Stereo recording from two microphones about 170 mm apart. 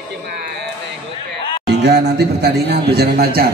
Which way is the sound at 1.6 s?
80° right.